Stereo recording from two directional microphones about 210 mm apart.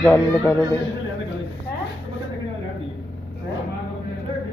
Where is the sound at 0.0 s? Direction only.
10° left (ahead or behind).